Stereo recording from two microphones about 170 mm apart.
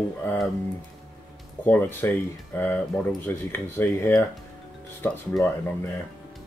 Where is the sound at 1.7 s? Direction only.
10° left (ahead or behind).